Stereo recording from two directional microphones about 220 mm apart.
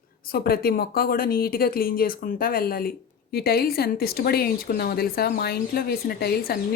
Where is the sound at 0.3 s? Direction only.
45° left (ahead or behind).